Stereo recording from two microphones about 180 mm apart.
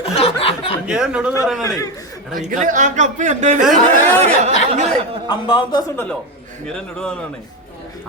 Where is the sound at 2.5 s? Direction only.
45° right (ahead or behind).